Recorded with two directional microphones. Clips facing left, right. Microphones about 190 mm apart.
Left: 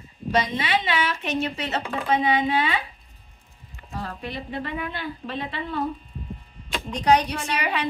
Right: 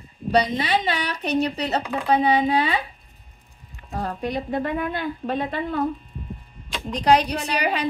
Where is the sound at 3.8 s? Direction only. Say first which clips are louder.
Right 6 dB; 45° right (ahead or behind).